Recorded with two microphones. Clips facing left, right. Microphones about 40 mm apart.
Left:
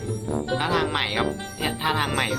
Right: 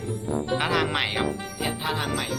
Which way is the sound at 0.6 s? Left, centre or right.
Centre.